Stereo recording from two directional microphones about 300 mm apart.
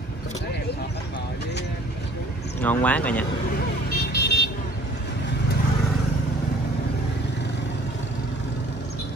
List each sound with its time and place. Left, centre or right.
2.6 s speech: centre
3.9 s vehicle: left